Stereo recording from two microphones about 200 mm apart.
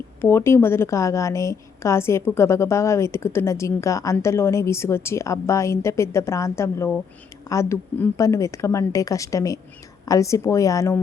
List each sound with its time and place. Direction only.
0.2 s a woman's voice: 10° left (ahead or behind)